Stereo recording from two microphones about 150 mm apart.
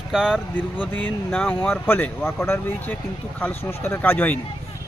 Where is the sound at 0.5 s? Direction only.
10° left (ahead or behind).